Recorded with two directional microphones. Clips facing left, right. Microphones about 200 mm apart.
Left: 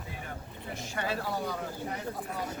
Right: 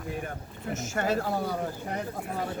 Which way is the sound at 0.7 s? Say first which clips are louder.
Right 6 dB; 45° right (ahead or behind).